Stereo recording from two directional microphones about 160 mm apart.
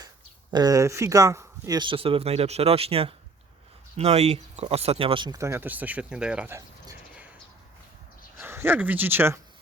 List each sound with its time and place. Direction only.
0.5 s speech: 25° right (ahead or behind); by 6.6 s 10° right (ahead or behind)
8.4 s speech: 15° right (ahead or behind)